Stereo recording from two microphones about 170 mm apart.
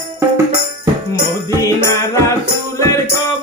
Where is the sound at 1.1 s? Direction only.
15° left (ahead or behind).